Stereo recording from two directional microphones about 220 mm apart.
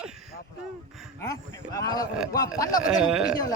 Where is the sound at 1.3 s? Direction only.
15° left (ahead or behind).